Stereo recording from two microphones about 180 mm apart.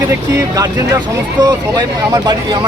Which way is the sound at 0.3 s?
15° right (ahead or behind).